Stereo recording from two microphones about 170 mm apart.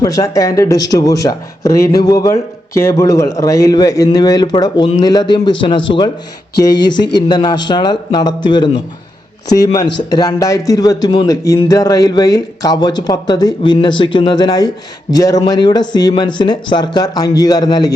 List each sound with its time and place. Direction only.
0.0 s speech: 20° left (ahead or behind)
6.8 s speech: 25° left (ahead or behind)